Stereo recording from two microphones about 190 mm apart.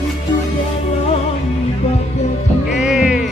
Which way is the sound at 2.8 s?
5° right (ahead or behind).